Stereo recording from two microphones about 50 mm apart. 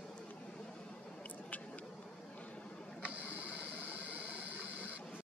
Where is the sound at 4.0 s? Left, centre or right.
Right.